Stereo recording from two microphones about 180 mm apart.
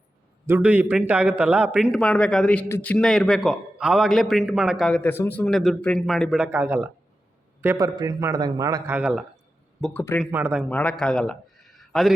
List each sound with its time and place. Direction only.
0.4 s a man's voice: 10° right (ahead or behind)
9.0 s speech: 5° right (ahead or behind)
9.8 s speech: 10° left (ahead or behind)
10.3 s speech: 10° right (ahead or behind)
10.6 s a man's voice: 5° left (ahead or behind)